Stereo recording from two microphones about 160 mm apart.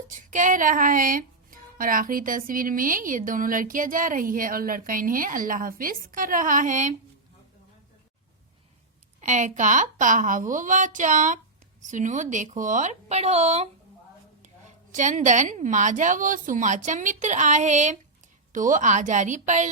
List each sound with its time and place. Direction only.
0.1 s speech: 50° right (ahead or behind)
9.2 s a woman's voice: 50° right (ahead or behind)
14.9 s a woman's voice: 50° right (ahead or behind)